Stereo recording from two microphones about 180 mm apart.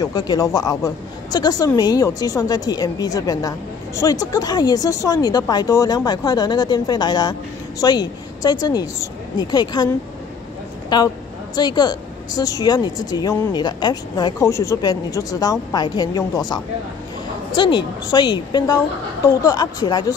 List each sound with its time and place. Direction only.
0.0 s a woman's voice: 20° left (ahead or behind)
10.9 s a woman's voice: 25° left (ahead or behind)